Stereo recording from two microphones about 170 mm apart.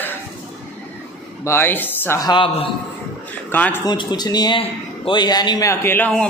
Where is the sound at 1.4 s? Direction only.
15° left (ahead or behind); by 2.7 s 30° left (ahead or behind).